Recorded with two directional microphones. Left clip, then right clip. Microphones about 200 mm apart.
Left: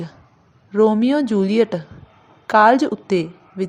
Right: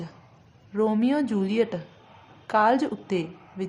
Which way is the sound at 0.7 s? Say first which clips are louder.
Left 8 dB; 25° left (ahead or behind).